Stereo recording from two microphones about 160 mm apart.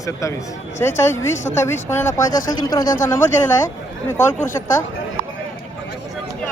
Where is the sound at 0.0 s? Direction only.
20° left (ahead or behind).